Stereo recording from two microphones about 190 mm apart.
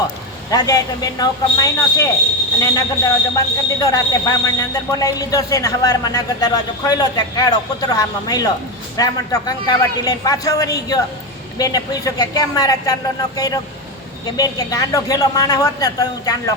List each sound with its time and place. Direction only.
0.5 s speech: 20° left (ahead or behind)